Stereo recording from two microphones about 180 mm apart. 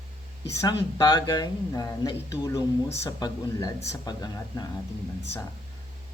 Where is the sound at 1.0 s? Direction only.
25° left (ahead or behind).